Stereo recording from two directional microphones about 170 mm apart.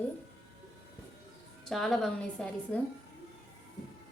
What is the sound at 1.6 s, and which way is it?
A woman's voice, centre (ahead or behind).